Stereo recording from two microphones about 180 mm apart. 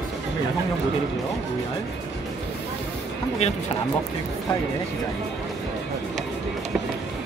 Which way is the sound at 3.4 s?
35° left (ahead or behind).